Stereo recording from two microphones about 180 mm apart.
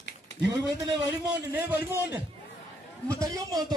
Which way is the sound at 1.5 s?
10° right (ahead or behind).